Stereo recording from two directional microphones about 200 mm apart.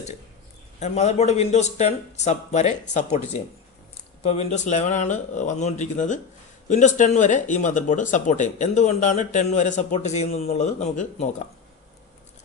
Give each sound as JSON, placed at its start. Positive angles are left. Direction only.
{"t": 0.8, "sound": "speech", "side_deg": 35}